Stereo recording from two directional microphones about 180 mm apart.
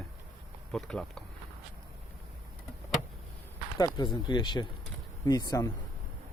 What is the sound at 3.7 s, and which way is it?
Speech, 20° left (ahead or behind).